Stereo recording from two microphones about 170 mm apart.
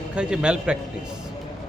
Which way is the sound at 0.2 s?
5° right (ahead or behind).